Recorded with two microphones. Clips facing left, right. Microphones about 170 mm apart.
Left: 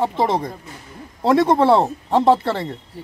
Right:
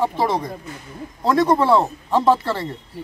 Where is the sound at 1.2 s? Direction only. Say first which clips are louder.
Left 2 dB; 25° left (ahead or behind).